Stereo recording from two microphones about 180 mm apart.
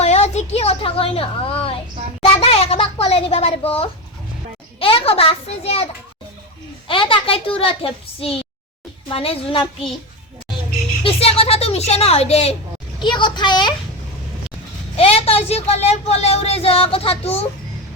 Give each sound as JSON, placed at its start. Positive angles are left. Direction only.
{"t": 0.0, "sound": "a sound", "side_deg": 35}
{"t": 4.8, "sound": "a child's voice", "side_deg": 30}
{"t": 11.0, "sound": "a woman's voice", "side_deg": 35}
{"t": 14.9, "sound": "a woman's voice", "side_deg": 35}